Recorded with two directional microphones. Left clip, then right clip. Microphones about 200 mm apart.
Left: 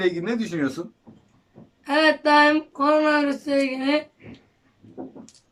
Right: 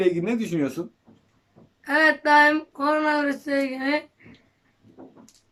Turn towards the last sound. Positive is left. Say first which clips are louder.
# left 2 dB
turn(degrees=5)  # may be behind; listen again after turning